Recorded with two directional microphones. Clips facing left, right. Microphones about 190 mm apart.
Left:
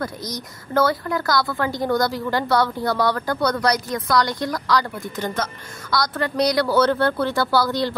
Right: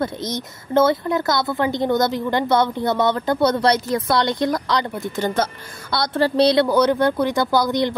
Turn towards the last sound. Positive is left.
turn(degrees=-20)  # may be behind; listen again after turning